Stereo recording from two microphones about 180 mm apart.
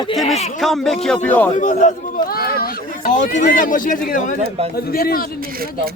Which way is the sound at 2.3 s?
55° left (ahead or behind).